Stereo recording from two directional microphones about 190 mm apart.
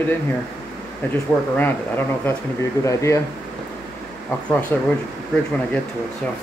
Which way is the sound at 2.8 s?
15° left (ahead or behind).